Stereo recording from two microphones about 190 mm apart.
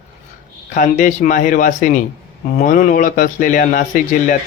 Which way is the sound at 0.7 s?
40° left (ahead or behind).